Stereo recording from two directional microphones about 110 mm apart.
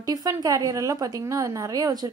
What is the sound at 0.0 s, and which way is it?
A woman's voice, 30° right (ahead or behind).